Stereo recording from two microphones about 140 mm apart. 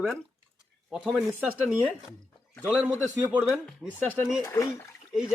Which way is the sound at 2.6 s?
15° right (ahead or behind).